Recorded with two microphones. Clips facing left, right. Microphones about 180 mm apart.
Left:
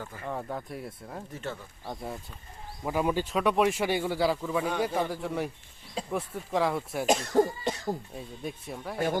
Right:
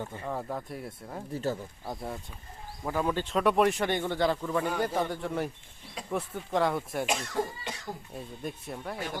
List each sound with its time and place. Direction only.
0.0 s speech: 25° right (ahead or behind)
0.3 s speech: centre (ahead or behind)
1.3 s speech: 35° right (ahead or behind)
1.8 s speech: centre (ahead or behind)
2.8 s speech: 10° left (ahead or behind)
7.1 s cough: 40° left (ahead or behind)
8.1 s speech: centre (ahead or behind)